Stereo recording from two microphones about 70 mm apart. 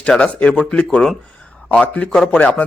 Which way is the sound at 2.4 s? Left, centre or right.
Left.